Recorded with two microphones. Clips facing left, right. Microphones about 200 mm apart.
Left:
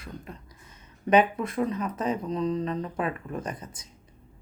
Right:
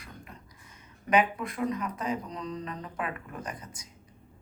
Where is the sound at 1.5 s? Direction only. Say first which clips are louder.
Left 3 dB; 30° left (ahead or behind).